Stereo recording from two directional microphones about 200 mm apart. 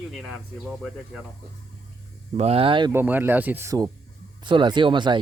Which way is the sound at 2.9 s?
10° right (ahead or behind).